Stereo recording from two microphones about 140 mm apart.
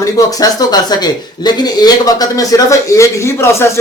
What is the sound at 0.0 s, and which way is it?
A man's voice, 25° left (ahead or behind).